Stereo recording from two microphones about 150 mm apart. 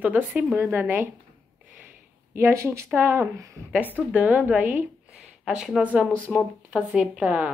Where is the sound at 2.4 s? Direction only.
20° right (ahead or behind).